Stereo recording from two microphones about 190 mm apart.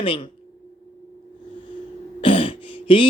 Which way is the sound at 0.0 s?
25° left (ahead or behind).